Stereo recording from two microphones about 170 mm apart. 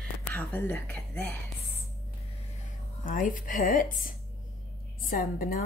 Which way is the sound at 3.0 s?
55° left (ahead or behind).